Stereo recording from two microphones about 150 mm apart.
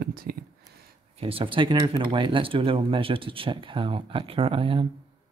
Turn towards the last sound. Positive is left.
turn(degrees=-35)  # may be behind; listen again after turning